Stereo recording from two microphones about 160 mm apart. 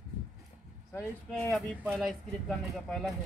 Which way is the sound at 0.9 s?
10° left (ahead or behind).